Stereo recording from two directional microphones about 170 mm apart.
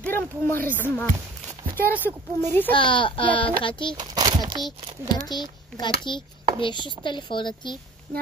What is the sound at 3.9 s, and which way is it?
Speech, 25° right (ahead or behind).